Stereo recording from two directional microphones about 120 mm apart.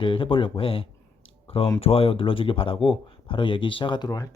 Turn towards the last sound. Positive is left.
turn(degrees=35)  # may be behind; listen again after turning